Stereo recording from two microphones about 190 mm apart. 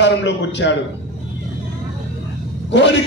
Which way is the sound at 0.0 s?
70° left (ahead or behind).